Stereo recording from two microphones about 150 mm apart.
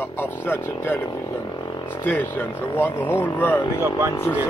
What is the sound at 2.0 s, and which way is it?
Speech, 10° left (ahead or behind).